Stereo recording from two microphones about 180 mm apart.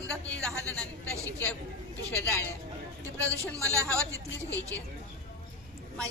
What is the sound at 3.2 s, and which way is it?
Speech, 15° right (ahead or behind).